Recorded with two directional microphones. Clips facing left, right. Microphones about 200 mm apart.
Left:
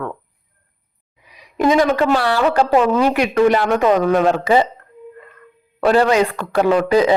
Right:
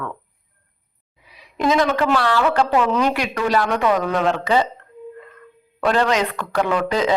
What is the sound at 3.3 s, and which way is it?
Speech, 20° left (ahead or behind).